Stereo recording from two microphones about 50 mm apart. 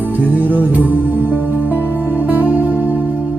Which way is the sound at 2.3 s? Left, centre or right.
Right.